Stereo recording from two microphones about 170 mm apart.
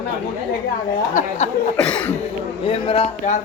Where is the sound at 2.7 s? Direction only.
35° left (ahead or behind).